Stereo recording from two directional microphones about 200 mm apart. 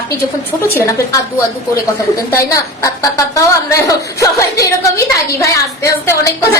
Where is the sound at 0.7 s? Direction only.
15° left (ahead or behind).